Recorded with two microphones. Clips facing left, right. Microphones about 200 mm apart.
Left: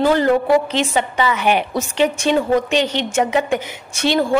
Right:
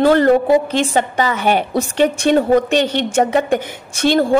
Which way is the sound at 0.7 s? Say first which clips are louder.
Right 2 dB; 50° right (ahead or behind).